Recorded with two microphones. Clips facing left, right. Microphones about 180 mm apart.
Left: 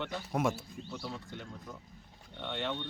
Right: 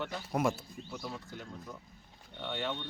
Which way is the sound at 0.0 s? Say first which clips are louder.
Even; centre (ahead or behind).